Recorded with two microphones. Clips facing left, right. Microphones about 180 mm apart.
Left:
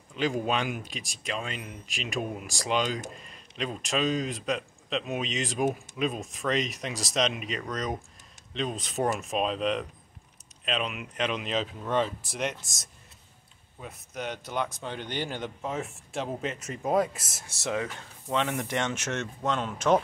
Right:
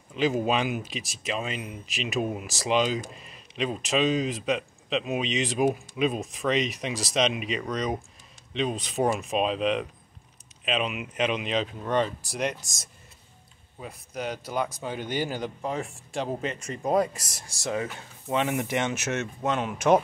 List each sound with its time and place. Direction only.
0.5 s speech: 5° right (ahead or behind)
8.9 s speech: 15° right (ahead or behind)
9.2 s speech: centre (ahead or behind)